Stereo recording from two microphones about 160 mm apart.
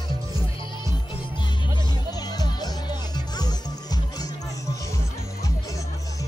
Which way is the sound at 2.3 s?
25° left (ahead or behind).